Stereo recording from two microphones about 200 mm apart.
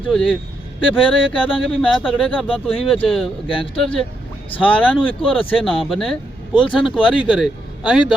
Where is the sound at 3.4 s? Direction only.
25° left (ahead or behind).